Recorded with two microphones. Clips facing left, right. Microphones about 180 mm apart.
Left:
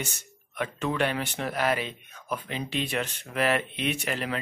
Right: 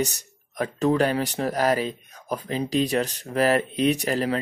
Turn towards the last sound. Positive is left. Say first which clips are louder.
# right 7 dB
turn(degrees=-35)  # may be behind; listen again after turning